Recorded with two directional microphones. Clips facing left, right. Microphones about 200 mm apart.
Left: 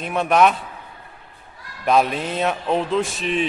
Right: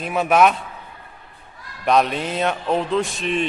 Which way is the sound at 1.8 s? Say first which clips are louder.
Even; centre (ahead or behind).